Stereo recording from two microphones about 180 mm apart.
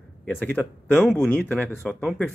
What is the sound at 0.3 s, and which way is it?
Speech, 10° left (ahead or behind).